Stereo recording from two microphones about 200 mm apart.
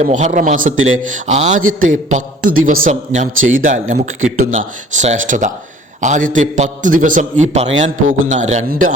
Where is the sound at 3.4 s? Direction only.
80° right.